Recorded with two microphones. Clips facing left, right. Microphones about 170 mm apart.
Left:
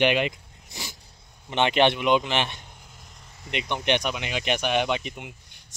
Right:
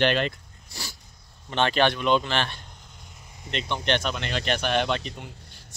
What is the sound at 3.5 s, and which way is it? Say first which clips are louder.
Speech: left 1 dB; 15° left (ahead or behind).